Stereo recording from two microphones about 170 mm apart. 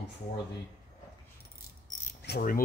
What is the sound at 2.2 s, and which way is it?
Pulleys, 65° left (ahead or behind).